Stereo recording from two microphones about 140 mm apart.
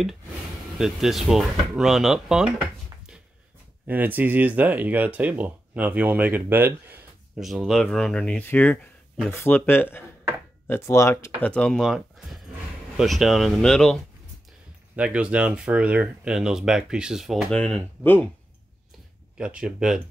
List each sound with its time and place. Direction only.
0.7 s speech: 5° right (ahead or behind)
7.3 s speech: centre (ahead or behind); by 11.5 s 20° left (ahead or behind)
11.5 s speech: 5° left (ahead or behind)
15.0 s speech: 10° right (ahead or behind); by 18.3 s 10° left (ahead or behind)
19.3 s speech: 5° right (ahead or behind)